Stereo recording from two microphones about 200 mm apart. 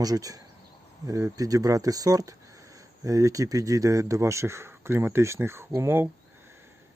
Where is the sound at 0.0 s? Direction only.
20° right (ahead or behind).